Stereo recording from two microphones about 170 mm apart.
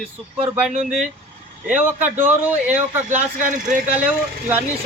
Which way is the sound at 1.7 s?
10° right (ahead or behind).